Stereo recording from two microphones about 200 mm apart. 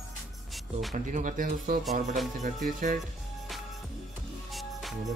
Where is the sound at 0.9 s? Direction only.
40° right (ahead or behind).